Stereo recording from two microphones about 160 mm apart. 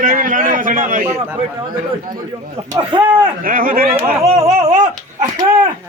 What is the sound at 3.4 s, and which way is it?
Speech, 60° right (ahead or behind).